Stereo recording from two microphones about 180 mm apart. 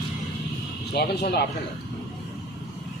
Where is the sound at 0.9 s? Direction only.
65° left (ahead or behind).